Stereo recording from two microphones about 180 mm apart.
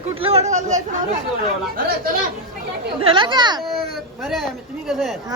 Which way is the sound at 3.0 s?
30° right (ahead or behind).